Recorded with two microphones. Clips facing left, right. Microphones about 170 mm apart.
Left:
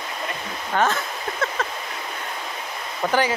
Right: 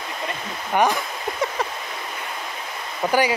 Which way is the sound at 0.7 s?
15° right (ahead or behind).